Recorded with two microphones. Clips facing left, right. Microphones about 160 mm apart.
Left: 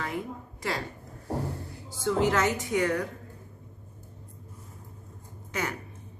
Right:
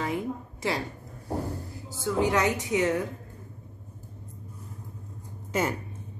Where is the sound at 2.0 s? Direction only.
15° right (ahead or behind).